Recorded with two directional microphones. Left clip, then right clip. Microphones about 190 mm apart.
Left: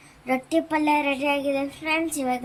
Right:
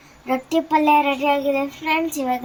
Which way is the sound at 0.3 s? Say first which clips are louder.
Right 4 dB; 30° left (ahead or behind).